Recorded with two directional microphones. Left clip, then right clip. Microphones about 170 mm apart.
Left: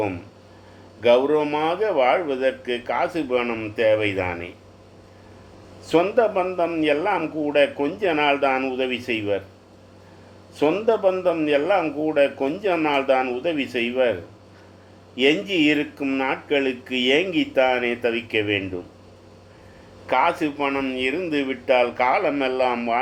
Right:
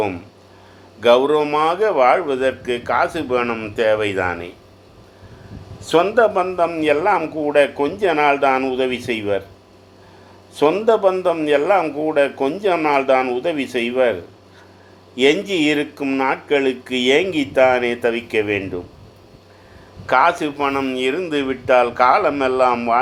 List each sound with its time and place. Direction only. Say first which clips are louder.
1.0 s speech: right 4 dB; 30° right (ahead or behind)
5.9 s speech: right 4 dB; 30° right (ahead or behind)
10.5 s speech: right 5 dB; 25° right (ahead or behind)
15.2 s speech: right 3 dB; 30° right (ahead or behind)
20.1 s speech: right 5 dB; 30° right (ahead or behind)